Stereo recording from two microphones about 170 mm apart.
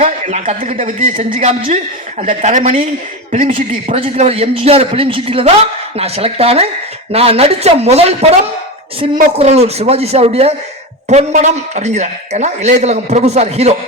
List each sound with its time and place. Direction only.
0.0 s a man's voice: 40° right (ahead or behind)